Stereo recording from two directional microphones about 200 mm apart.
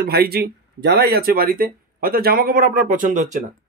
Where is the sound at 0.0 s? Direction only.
50° right (ahead or behind).